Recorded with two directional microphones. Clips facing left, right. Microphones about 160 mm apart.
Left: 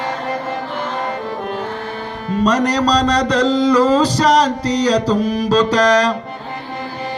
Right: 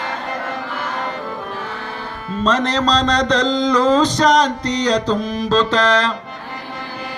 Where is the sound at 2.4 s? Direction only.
10° left (ahead or behind).